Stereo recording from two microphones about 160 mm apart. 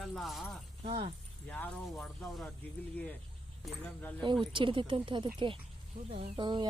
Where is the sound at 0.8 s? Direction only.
35° right (ahead or behind).